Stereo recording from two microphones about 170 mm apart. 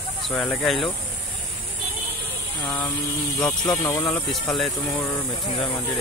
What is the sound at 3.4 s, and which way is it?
Speech, 5° left (ahead or behind).